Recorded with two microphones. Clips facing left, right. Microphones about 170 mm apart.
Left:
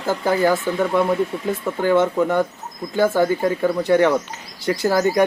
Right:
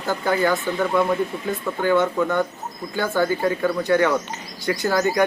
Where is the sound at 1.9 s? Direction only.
25° left (ahead or behind).